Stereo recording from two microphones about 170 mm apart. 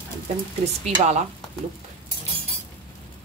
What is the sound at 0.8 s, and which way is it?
Speech, 40° right (ahead or behind).